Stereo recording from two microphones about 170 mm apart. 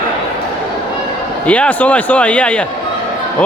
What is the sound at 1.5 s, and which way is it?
Speech, 10° left (ahead or behind).